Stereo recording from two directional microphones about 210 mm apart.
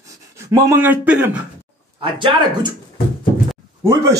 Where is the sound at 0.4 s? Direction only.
15° right (ahead or behind).